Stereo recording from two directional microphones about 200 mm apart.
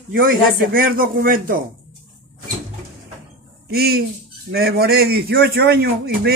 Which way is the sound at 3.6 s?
50° right (ahead or behind).